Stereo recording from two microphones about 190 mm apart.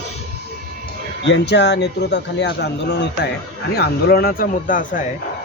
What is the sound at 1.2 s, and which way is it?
A man's voice, 65° left (ahead or behind).